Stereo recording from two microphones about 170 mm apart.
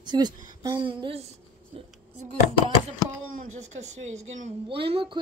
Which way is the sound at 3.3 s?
45° right (ahead or behind).